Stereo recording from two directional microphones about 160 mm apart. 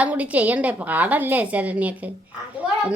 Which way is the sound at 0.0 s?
10° right (ahead or behind).